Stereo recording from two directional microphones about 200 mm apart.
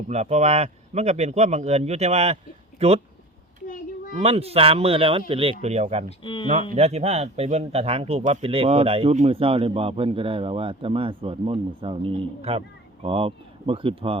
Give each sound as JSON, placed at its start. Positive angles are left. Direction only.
{"t": 0.1, "sound": "a man's voice", "side_deg": -35}
{"t": 4.1, "sound": "a man's voice", "side_deg": -30}
{"t": 6.1, "sound": "speech", "side_deg": 25}
{"t": 6.5, "sound": "speech", "side_deg": -40}